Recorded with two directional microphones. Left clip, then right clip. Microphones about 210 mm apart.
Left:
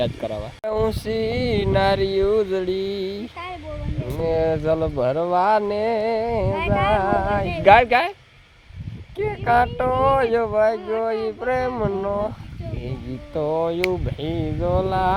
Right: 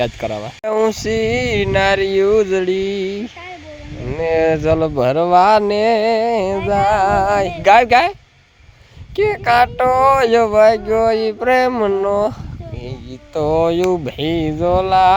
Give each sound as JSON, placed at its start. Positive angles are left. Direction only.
{"t": 0.0, "sound": "speech", "side_deg": -35}
{"t": 4.2, "sound": "speech", "side_deg": -40}
{"t": 9.1, "sound": "speech", "side_deg": -50}
{"t": 13.3, "sound": "speech", "side_deg": -45}